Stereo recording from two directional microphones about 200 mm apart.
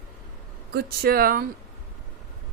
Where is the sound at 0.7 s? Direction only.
50° right (ahead or behind).